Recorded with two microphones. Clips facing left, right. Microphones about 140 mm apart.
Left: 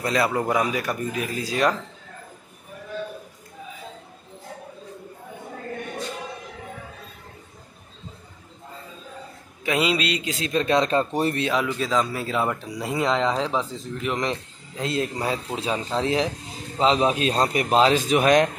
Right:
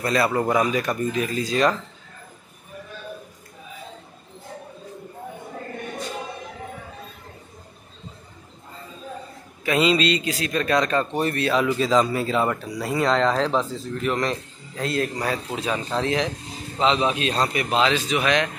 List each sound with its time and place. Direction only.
0.0 s speech: 15° left (ahead or behind)
9.7 s speech: 10° left (ahead or behind)
10.3 s speech: 25° left (ahead or behind)
11.6 s a man's voice: centre (ahead or behind)
12.5 s speech: 15° left (ahead or behind)
16.8 s a man's voice: 40° left (ahead or behind)